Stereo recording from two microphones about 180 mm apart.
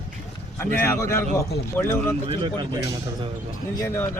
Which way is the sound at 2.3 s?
25° right (ahead or behind).